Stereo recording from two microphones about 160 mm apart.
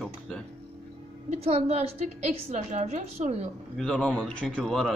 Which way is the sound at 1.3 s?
40° right (ahead or behind).